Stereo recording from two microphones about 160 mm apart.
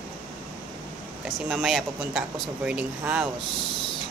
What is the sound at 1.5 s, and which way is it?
Speech, 5° right (ahead or behind).